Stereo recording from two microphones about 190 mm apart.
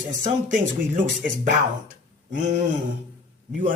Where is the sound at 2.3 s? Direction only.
40° right (ahead or behind).